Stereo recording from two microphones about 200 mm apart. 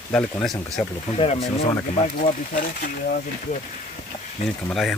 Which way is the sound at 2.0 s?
40° left (ahead or behind).